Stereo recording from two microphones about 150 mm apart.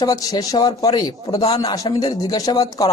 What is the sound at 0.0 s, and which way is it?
Speech, 25° left (ahead or behind).